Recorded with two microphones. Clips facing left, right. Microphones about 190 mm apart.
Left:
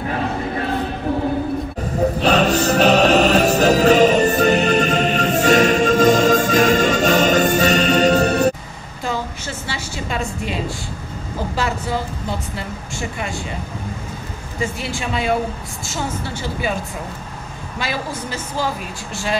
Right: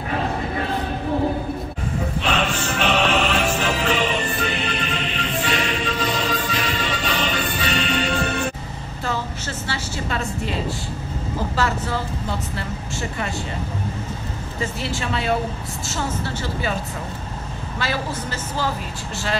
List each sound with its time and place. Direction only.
2.1 s music: 40° left (ahead or behind)
9.7 s a sound: 15° left (ahead or behind)
11.5 s a woman's voice: 10° left (ahead or behind)
14.6 s a woman's voice: 10° left (ahead or behind)
17.7 s a woman's voice: 10° left (ahead or behind)